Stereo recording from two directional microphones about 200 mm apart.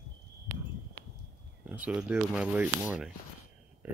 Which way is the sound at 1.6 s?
5° right (ahead or behind).